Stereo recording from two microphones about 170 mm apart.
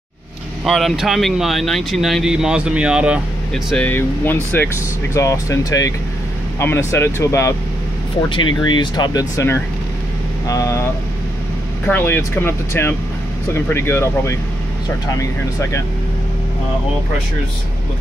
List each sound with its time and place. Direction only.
0.7 s speech: centre (ahead or behind)
3.7 s speech: 10° left (ahead or behind)
8.3 s speech: 30° left (ahead or behind)
11.9 s speech: 15° left (ahead or behind)